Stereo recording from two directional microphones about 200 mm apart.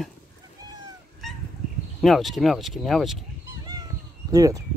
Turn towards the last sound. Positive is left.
turn(degrees=-15)  # may be behind; listen again after turning